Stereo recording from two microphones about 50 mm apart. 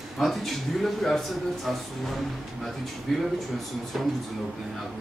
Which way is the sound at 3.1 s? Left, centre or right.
Centre.